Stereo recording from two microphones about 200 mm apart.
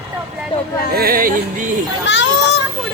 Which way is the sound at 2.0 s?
65° left (ahead or behind).